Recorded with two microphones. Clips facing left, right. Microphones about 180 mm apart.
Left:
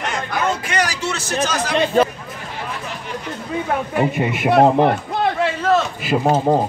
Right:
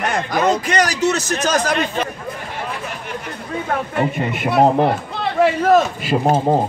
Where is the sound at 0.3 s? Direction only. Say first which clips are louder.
Right 5 dB; 40° right (ahead or behind).